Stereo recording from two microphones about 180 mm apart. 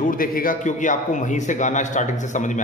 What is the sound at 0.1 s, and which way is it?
A man's voice, 50° left (ahead or behind).